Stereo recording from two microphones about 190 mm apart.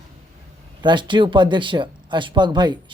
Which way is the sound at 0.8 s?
25° right (ahead or behind).